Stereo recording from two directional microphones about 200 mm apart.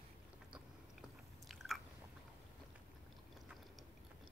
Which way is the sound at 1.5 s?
Centre (ahead or behind).